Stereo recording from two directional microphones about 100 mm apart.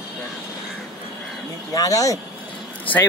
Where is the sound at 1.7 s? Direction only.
35° left (ahead or behind).